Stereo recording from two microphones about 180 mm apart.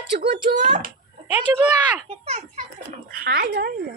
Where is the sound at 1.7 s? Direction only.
5° right (ahead or behind).